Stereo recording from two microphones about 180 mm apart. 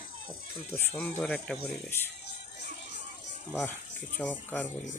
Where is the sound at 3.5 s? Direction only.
10° left (ahead or behind).